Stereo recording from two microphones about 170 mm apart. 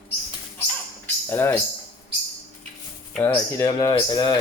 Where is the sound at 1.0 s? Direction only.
15° left (ahead or behind).